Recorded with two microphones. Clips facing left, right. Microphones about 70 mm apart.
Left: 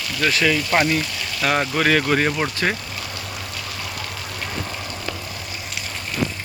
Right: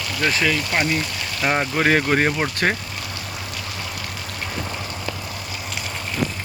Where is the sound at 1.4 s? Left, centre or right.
Centre; by 2.8 s right.